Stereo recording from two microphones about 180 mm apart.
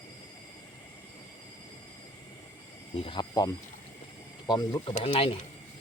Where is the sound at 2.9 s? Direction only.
30° left (ahead or behind).